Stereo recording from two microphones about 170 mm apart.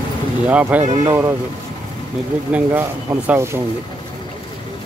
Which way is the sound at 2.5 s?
10° right (ahead or behind).